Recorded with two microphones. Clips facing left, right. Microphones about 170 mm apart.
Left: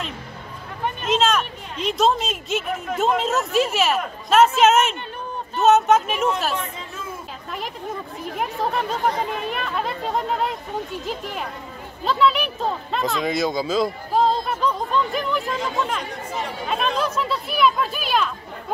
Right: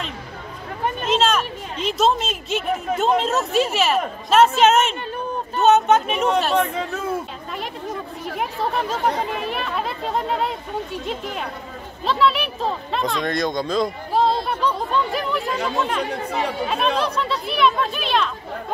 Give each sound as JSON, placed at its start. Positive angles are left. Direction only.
{"t": 1.0, "sound": "speech", "side_deg": 0}
{"t": 6.5, "sound": "speech", "side_deg": -65}
{"t": 9.2, "sound": "speech", "side_deg": 0}
{"t": 16.1, "sound": "speech", "side_deg": -65}
{"t": 16.6, "sound": "speech", "side_deg": 0}